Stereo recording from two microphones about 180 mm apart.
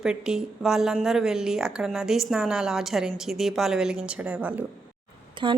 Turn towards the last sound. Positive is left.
turn(degrees=-25)  # may be behind; listen again after turning